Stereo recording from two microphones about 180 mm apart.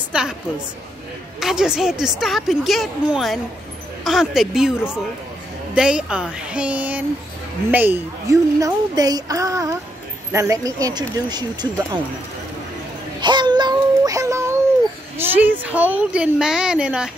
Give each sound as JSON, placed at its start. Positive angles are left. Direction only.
{"t": 0.1, "sound": "a woman's voice", "side_deg": -5}
{"t": 1.4, "sound": "a woman's voice", "side_deg": -5}
{"t": 5.8, "sound": "a woman's voice", "side_deg": -5}
{"t": 13.2, "sound": "child singing", "side_deg": -25}
{"t": 15.1, "sound": "a woman's voice", "side_deg": -10}